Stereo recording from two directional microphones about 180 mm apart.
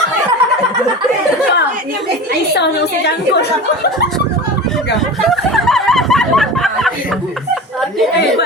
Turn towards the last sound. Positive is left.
turn(degrees=0)  # may be behind; listen again after turning